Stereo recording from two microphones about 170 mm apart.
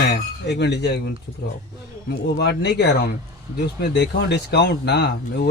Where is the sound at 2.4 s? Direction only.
80° left.